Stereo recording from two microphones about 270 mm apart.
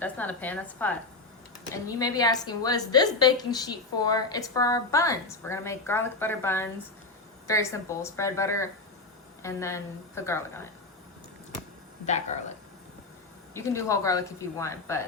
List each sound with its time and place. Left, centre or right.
0.0 s a woman's voice: centre
12.0 s speech: left
13.5 s a woman's voice: centre